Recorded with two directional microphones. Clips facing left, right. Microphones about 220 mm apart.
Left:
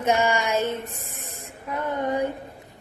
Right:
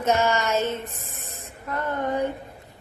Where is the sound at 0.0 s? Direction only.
10° left (ahead or behind).